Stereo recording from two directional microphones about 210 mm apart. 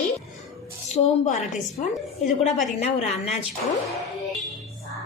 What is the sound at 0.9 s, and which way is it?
Speech, 35° left (ahead or behind).